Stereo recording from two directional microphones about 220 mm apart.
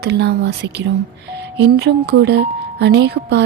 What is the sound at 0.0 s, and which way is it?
Speech, 50° right (ahead or behind).